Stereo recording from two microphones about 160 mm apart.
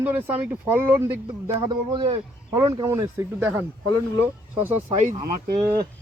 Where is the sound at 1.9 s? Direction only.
30° right (ahead or behind).